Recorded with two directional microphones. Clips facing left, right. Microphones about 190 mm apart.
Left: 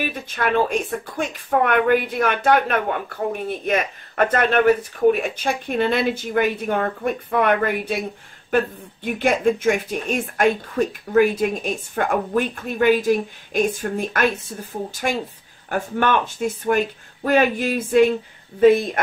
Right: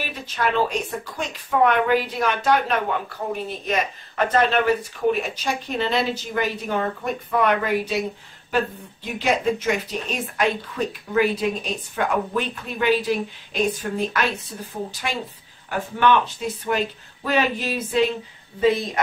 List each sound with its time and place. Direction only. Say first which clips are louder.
0.0 s speech: left 2 dB; 55° left (ahead or behind)